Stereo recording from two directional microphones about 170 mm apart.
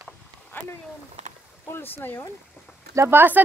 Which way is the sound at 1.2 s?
40° right (ahead or behind).